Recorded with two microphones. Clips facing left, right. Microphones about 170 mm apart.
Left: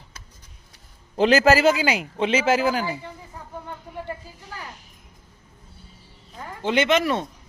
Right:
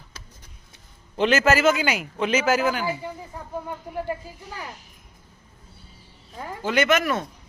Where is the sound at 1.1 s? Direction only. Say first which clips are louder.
Left 3 dB; 35° left (ahead or behind).